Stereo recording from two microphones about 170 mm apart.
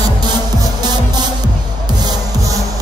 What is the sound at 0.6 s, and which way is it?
Music, 25° right (ahead or behind).